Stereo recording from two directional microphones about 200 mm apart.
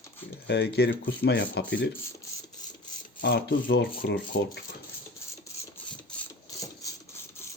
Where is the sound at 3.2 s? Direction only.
60° left (ahead or behind).